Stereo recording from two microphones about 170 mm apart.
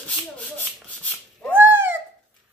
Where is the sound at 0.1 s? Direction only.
10° left (ahead or behind).